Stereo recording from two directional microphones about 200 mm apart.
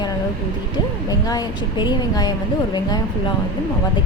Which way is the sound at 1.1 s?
20° left (ahead or behind).